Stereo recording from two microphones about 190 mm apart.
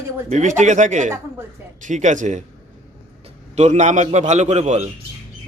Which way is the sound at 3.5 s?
35° right (ahead or behind).